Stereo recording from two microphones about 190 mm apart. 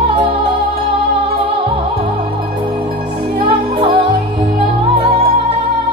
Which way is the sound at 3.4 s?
30° right (ahead or behind).